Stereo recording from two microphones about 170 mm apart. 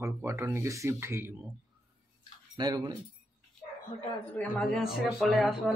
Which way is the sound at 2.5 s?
25° right (ahead or behind).